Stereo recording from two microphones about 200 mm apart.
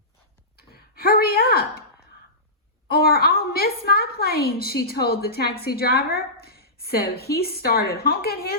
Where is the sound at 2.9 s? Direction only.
50° left (ahead or behind).